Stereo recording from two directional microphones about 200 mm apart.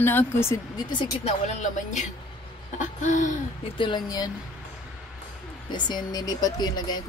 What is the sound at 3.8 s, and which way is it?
Speech, 20° left (ahead or behind).